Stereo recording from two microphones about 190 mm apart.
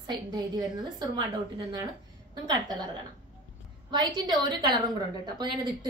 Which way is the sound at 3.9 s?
20° right (ahead or behind).